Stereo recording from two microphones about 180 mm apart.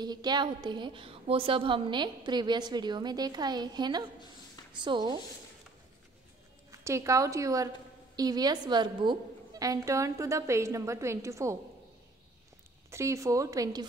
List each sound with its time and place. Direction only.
0.0 s a woman's voice: 25° right (ahead or behind)
6.7 s a woman's voice: 15° right (ahead or behind)
12.9 s a woman's voice: 15° right (ahead or behind)